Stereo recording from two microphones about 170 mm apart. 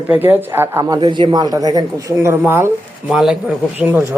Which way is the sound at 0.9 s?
30° right (ahead or behind).